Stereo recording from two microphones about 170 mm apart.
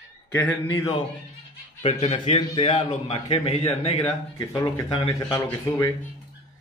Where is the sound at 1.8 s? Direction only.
40° left (ahead or behind).